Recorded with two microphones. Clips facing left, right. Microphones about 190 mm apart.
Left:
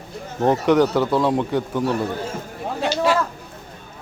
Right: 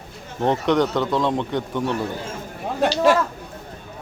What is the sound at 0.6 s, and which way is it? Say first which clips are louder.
A man's voice: left 4 dB; 5° left (ahead or behind).